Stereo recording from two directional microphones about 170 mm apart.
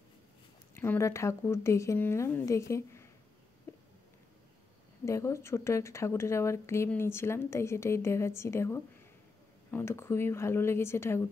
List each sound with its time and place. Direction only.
0.7 s a woman's voice: 15° left (ahead or behind)
3.7 s a sound: 15° left (ahead or behind)
5.0 s a woman's voice: 15° left (ahead or behind)